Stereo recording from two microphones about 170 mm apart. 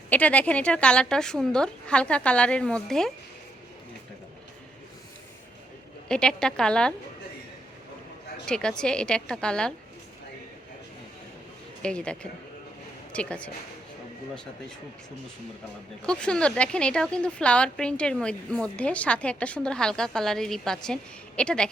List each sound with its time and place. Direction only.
0.1 s a woman's voice: 10° left (ahead or behind)
6.1 s a woman's voice: 5° left (ahead or behind)
8.4 s a woman's voice: 5° left (ahead or behind)
11.8 s a woman's voice: 5° left (ahead or behind)
16.0 s a woman's voice: 5° left (ahead or behind)